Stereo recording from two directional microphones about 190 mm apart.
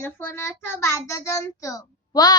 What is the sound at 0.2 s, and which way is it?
A child's voice, 10° left (ahead or behind).